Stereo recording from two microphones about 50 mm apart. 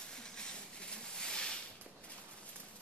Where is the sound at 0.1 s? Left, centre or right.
Centre.